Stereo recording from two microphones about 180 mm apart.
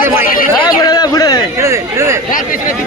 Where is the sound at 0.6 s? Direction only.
20° left (ahead or behind).